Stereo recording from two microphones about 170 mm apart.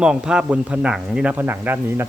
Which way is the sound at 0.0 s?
5° right (ahead or behind).